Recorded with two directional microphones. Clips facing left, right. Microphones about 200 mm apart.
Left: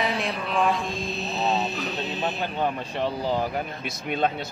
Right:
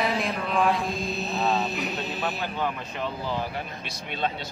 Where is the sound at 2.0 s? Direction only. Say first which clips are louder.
Left 2 dB; 20° left (ahead or behind); by 4.3 s 50° left (ahead or behind).